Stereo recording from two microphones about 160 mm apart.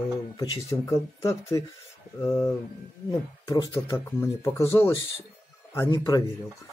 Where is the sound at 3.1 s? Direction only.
25° left (ahead or behind).